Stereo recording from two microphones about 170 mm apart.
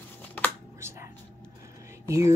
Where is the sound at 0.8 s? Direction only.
15° right (ahead or behind).